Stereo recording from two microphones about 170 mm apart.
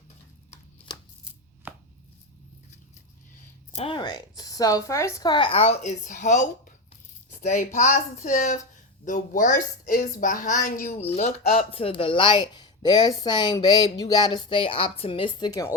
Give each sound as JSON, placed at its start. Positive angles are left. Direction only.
{"t": 1.6, "sound": "chopping", "side_deg": -10}
{"t": 3.8, "sound": "a woman's voice", "side_deg": 30}